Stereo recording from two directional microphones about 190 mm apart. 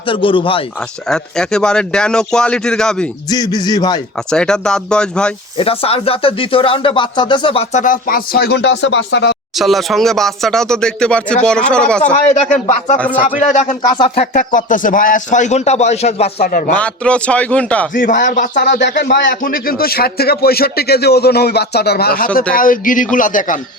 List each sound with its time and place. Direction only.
0.0 s a man's voice: 25° left (ahead or behind)
0.8 s speech: 5° left (ahead or behind)
3.2 s a man's voice: 20° left (ahead or behind)
4.3 s speech: 5° left (ahead or behind)
5.5 s speech: 30° left (ahead or behind); by 9.3 s 70° left (ahead or behind)
9.6 s speech: centre (ahead or behind)
12.1 s speech: 40° left (ahead or behind)
13.9 s a man's voice: 25° left (ahead or behind)
14.3 s speech: 45° left (ahead or behind)
16.4 s speech: 45° left (ahead or behind)
16.7 s a man's voice: 5° left (ahead or behind)
17.9 s speech: 45° left (ahead or behind)
18.9 s speech: 65° left (ahead or behind)
19.4 s speech: 50° left (ahead or behind)